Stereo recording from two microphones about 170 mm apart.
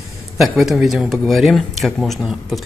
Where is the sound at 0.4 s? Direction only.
Centre (ahead or behind).